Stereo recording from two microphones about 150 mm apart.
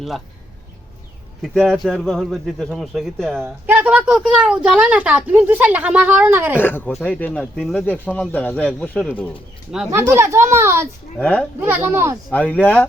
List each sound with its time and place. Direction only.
1.4 s speech: centre (ahead or behind)
3.7 s a woman's voice: 10° right (ahead or behind)
6.6 s speech: 15° left (ahead or behind)
10.1 s a child's voice: 15° right (ahead or behind)
11.2 s speech: 10° left (ahead or behind)
11.6 s a woman's voice: 15° right (ahead or behind)
12.3 s speech: 10° left (ahead or behind)